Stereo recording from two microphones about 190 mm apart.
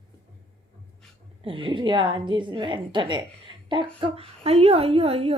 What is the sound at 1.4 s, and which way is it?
A woman's voice, 25° right (ahead or behind).